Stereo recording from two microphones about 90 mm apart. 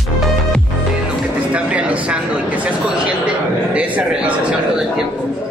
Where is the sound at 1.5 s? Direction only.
15° right (ahead or behind).